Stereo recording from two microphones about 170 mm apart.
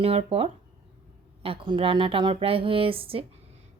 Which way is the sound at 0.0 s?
35° right (ahead or behind).